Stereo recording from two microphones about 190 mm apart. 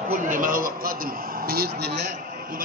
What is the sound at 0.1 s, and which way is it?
A man's voice, 45° right (ahead or behind).